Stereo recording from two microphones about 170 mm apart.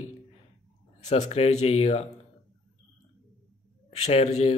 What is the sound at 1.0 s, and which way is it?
Speech, 40° left (ahead or behind).